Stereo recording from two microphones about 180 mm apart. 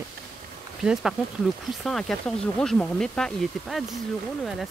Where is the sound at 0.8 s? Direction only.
5° right (ahead or behind).